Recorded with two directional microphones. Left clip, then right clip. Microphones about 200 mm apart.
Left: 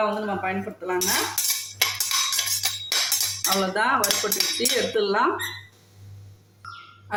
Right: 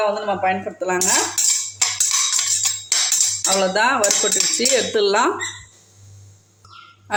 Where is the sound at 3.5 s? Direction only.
45° right (ahead or behind).